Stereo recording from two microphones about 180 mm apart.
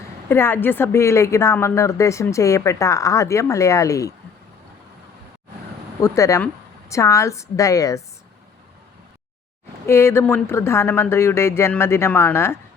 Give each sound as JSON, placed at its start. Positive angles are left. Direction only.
{"t": 0.3, "sound": "a woman's voice", "side_deg": 10}
{"t": 6.0, "sound": "a woman's voice", "side_deg": 15}
{"t": 9.8, "sound": "a woman's voice", "side_deg": 15}